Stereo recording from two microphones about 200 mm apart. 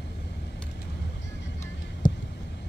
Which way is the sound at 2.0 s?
20° left (ahead or behind).